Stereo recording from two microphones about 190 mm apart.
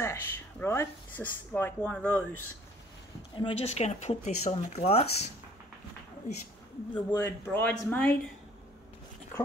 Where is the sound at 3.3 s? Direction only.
30° left (ahead or behind).